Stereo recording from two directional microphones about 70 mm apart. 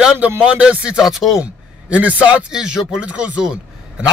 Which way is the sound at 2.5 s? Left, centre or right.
Centre.